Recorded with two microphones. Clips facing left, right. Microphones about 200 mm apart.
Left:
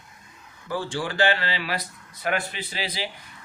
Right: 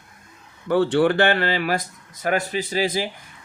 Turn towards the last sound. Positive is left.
turn(degrees=-45)  # may be behind; listen again after turning